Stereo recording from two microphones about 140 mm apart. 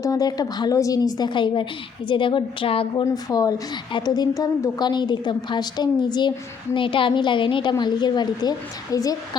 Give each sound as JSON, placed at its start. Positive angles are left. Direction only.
{"t": 0.0, "sound": "a woman's voice", "side_deg": 25}
{"t": 3.0, "sound": "a woman's voice", "side_deg": 25}